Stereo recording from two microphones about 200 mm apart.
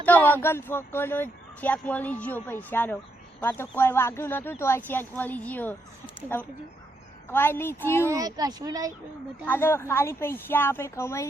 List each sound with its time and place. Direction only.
0.0 s speech: 10° left (ahead or behind)
8.0 s a child's voice: 15° right (ahead or behind)
9.5 s speech: 10° left (ahead or behind)